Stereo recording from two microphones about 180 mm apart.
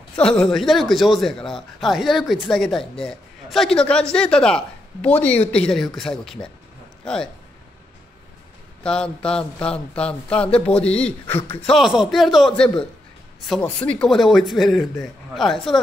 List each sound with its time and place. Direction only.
0.2 s speech: 5° left (ahead or behind)
8.8 s speech: 5° left (ahead or behind)